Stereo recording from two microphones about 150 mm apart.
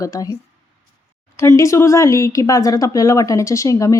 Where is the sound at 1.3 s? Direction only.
20° left (ahead or behind).